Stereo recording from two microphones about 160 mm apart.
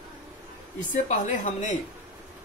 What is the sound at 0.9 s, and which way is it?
Speech, 50° left (ahead or behind).